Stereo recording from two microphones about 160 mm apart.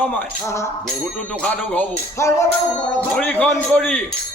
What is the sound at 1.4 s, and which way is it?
A man's voice, 10° left (ahead or behind).